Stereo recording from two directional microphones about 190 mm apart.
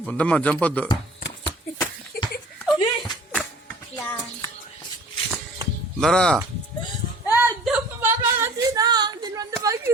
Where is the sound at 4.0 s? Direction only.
10° left (ahead or behind).